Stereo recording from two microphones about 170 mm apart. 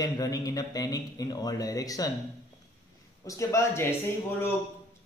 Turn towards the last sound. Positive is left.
turn(degrees=15)  # may be behind; listen again after turning